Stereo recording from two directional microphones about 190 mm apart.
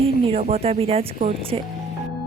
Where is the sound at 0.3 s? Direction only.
30° right (ahead or behind).